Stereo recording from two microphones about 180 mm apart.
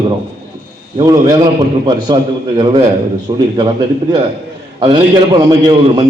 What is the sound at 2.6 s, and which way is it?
A man's voice, 25° right (ahead or behind).